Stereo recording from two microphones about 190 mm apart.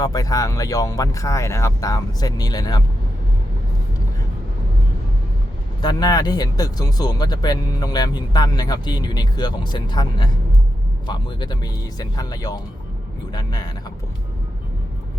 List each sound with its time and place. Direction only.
0.0 s speech: 20° left (ahead or behind)
5.8 s speech: 20° left (ahead or behind)